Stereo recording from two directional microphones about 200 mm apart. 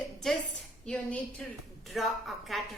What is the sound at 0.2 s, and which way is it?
A woman's voice, centre (ahead or behind).